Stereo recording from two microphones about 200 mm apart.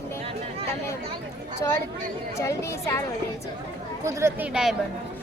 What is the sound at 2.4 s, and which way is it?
Speech, 15° left (ahead or behind).